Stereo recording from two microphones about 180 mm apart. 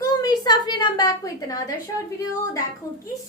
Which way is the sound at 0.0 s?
20° left (ahead or behind).